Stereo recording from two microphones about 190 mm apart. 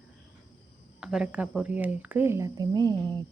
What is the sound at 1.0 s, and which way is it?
Speech, 5° right (ahead or behind).